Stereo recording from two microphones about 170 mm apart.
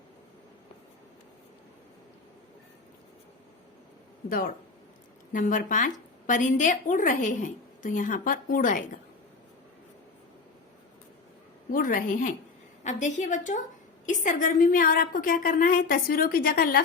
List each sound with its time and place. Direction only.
4.3 s a woman's voice: 55° left (ahead or behind)
11.7 s a woman's voice: 55° left (ahead or behind)